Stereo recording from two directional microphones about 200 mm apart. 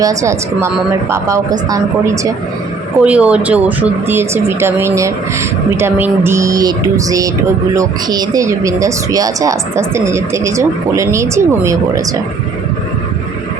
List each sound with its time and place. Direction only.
0.0 s speech: 15° right (ahead or behind)
3.0 s speech: 5° right (ahead or behind)